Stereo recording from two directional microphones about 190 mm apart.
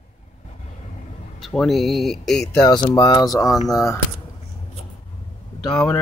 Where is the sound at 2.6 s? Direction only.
20° left (ahead or behind).